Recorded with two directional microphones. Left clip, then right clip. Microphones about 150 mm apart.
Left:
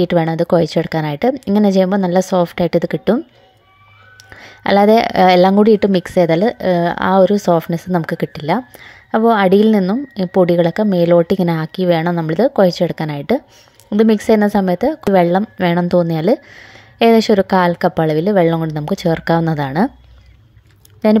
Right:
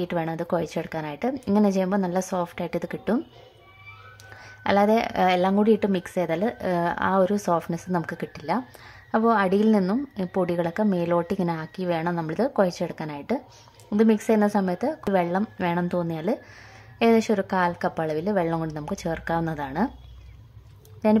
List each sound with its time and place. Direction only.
0.0 s speech: 35° left (ahead or behind)
4.4 s speech: 35° left (ahead or behind)
21.0 s speech: 35° left (ahead or behind)